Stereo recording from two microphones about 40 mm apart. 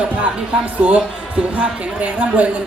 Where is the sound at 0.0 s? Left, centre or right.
Right.